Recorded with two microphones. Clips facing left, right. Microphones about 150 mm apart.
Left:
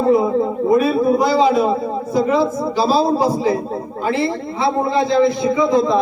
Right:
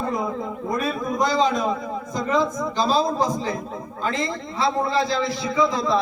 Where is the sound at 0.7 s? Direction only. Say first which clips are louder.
Left 10 dB; 10° left (ahead or behind).